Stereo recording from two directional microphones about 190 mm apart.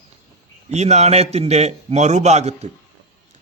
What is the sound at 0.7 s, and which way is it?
A man's voice, 35° right (ahead or behind).